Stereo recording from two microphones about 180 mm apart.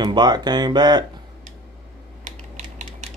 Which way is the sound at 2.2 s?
40° right (ahead or behind).